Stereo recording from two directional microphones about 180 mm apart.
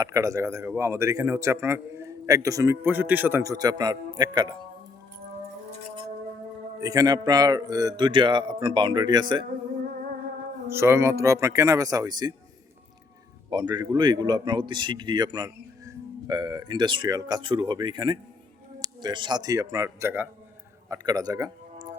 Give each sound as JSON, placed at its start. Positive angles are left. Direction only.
{"t": 0.0, "sound": "speech", "side_deg": -15}
{"t": 6.8, "sound": "a man's voice", "side_deg": -20}
{"t": 10.7, "sound": "speech", "side_deg": -15}
{"t": 13.5, "sound": "a man's voice", "side_deg": -25}